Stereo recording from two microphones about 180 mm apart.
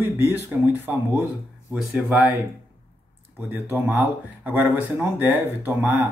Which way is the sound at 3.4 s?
10° right (ahead or behind).